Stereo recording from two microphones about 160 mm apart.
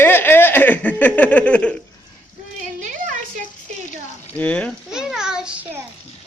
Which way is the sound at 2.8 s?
50° right (ahead or behind).